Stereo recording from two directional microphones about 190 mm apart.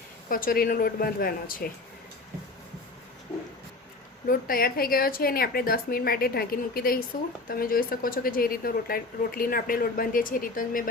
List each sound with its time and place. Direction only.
0.3 s speech: 50° left (ahead or behind)
4.3 s speech: 50° left (ahead or behind)